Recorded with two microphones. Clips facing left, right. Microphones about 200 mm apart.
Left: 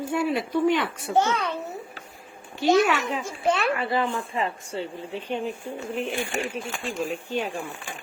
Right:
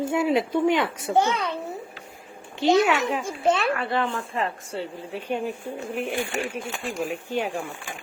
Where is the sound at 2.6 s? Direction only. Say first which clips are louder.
Right 1 dB; 20° right (ahead or behind).